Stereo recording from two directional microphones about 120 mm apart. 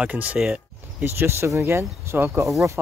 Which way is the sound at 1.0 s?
20° right (ahead or behind).